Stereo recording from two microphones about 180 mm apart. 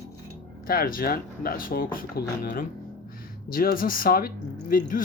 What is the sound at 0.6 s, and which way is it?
Speech, 55° left (ahead or behind).